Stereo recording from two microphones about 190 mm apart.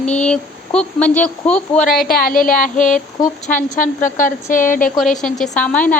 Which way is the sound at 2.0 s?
50° left (ahead or behind).